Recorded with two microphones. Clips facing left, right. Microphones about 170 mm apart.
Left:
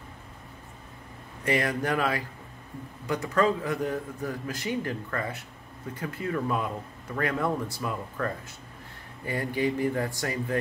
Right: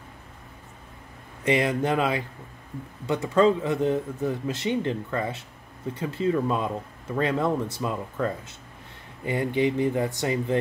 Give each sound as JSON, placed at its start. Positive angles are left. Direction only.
{"t": 1.4, "sound": "a man's voice", "side_deg": -20}